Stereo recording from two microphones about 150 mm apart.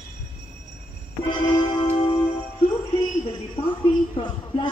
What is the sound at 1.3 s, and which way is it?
Music, 30° left (ahead or behind).